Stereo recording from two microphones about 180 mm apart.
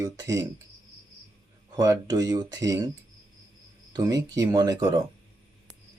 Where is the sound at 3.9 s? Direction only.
20° right (ahead or behind).